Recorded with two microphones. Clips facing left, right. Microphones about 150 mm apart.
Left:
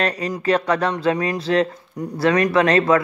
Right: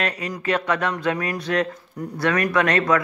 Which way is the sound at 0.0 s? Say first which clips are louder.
Left 4 dB; 40° left (ahead or behind).